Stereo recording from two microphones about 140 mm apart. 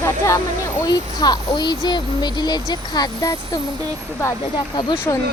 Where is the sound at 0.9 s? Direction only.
30° left (ahead or behind).